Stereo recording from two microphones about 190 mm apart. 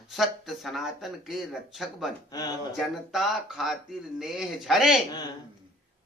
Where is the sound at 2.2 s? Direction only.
20° left (ahead or behind).